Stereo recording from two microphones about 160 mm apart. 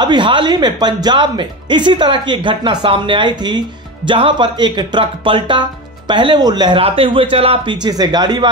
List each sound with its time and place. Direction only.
0.0 s speech: 30° right (ahead or behind)